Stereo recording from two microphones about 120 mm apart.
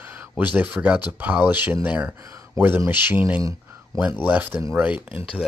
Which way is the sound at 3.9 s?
25° right (ahead or behind).